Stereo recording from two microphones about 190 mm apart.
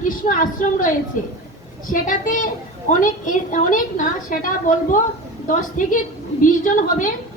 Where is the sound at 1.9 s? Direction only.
45° left (ahead or behind).